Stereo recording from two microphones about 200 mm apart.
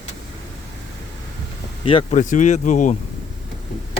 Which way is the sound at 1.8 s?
30° left (ahead or behind).